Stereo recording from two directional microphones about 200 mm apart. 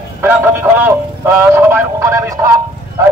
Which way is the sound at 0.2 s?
10° right (ahead or behind).